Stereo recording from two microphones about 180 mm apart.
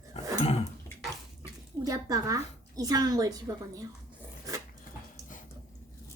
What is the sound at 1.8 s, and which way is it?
A woman's voice, 20° right (ahead or behind).